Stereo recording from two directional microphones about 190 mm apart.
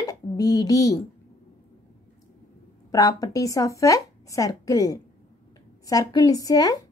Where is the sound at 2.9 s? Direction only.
20° left (ahead or behind).